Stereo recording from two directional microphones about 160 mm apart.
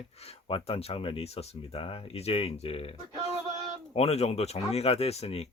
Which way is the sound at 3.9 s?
40° left (ahead or behind).